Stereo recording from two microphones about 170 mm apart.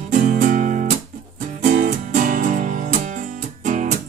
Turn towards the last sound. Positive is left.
turn(degrees=-50)  # may be behind; listen again after turning